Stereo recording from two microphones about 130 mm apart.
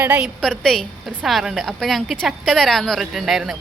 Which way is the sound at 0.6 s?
5° left (ahead or behind).